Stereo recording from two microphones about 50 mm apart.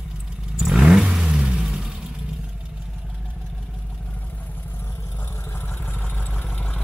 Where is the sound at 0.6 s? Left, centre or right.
Centre.